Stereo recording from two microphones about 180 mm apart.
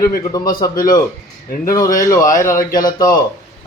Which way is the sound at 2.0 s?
20° left (ahead or behind).